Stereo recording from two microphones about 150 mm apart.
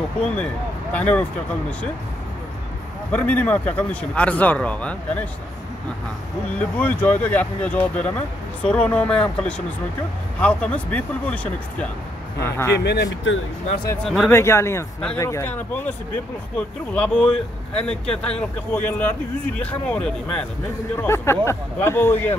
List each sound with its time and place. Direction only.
0.9 s speech: 10° left (ahead or behind)
3.1 s speech: 10° left (ahead or behind)
6.6 s speech: 10° left (ahead or behind)
12.7 s speech: 90° left
14.0 s speech: centre (ahead or behind)
14.3 s speech: 15° left (ahead or behind)
21.0 s speech: 15° left (ahead or behind)